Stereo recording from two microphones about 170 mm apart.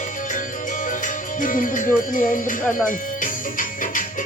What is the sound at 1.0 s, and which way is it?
Music, 50° left (ahead or behind).